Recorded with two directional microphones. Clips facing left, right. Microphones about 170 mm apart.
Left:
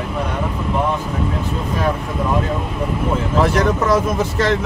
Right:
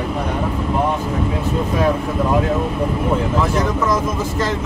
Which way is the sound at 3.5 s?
70° left (ahead or behind).